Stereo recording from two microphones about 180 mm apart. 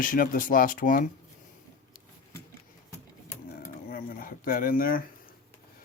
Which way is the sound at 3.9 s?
50° left (ahead or behind).